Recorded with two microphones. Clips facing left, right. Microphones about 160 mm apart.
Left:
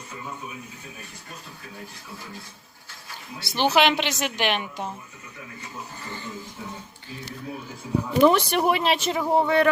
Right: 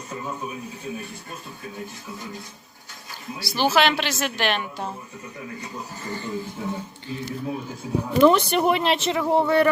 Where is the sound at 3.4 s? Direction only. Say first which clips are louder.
Even; 20° left (ahead or behind).